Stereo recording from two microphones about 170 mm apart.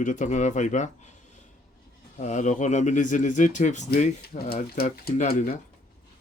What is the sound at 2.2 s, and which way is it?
Speech, 45° left (ahead or behind).